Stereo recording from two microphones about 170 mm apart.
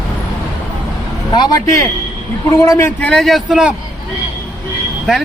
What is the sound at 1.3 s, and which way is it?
A man's voice, 20° left (ahead or behind).